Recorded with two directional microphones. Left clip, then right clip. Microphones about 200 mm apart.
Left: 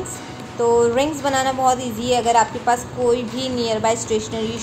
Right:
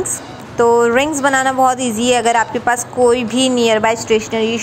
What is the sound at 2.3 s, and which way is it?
Speech, 30° right (ahead or behind).